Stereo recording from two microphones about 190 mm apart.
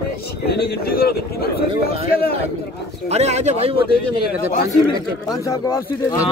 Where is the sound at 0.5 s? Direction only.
55° left (ahead or behind).